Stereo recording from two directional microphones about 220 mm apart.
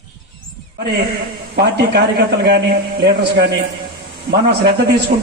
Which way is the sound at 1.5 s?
50° right (ahead or behind).